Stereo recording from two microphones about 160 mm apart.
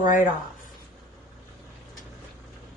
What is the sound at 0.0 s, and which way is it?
Speech, 55° left (ahead or behind).